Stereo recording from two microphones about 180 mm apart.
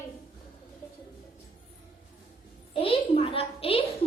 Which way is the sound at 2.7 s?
30° left (ahead or behind).